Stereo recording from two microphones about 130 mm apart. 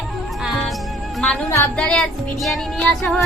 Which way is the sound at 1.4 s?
20° left (ahead or behind).